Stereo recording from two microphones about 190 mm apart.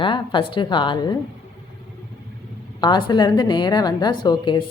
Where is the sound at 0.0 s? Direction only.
25° left (ahead or behind).